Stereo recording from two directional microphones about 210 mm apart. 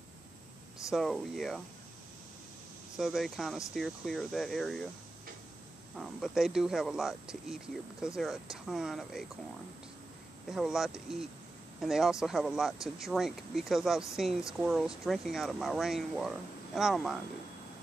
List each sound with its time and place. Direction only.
0.8 s speech: centre (ahead or behind)
3.0 s speech: centre (ahead or behind)
5.9 s speech: centre (ahead or behind)
10.5 s speech: centre (ahead or behind)